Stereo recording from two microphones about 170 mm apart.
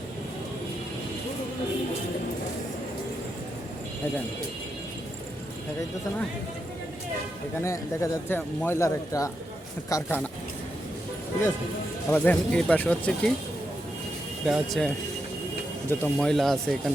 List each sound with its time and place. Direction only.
7.6 s speech: 15° left (ahead or behind)
12.1 s speech: 10° left (ahead or behind)
14.4 s speech: centre (ahead or behind)